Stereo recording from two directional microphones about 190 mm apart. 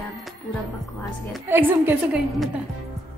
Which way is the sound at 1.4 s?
10° right (ahead or behind).